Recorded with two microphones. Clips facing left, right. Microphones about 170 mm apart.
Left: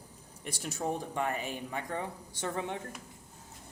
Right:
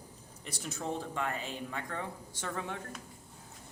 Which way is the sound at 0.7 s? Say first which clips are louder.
Left 3 dB; 15° left (ahead or behind).